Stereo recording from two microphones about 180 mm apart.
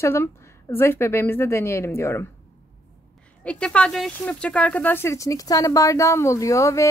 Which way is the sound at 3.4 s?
5° left (ahead or behind).